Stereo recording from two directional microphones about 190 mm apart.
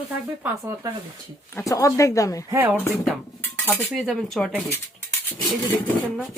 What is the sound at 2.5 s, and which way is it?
Speech, 10° right (ahead or behind).